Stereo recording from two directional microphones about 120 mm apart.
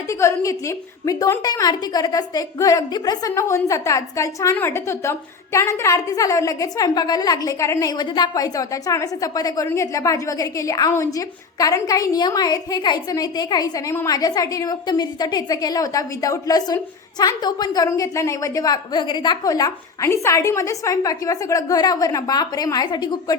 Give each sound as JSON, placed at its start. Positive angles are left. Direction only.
{"t": 0.1, "sound": "a woman's voice", "side_deg": 25}